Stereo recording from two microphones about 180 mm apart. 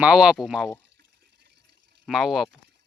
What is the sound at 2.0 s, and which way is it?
Speech, centre (ahead or behind).